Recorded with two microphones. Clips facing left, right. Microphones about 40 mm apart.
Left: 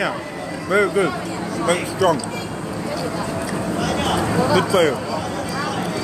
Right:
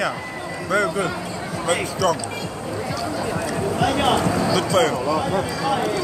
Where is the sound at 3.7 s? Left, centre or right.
Centre.